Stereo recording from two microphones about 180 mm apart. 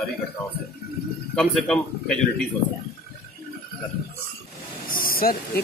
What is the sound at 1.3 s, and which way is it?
Speech, 5° left (ahead or behind).